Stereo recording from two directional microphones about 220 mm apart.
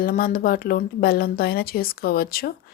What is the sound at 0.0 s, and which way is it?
Speech, 40° left (ahead or behind).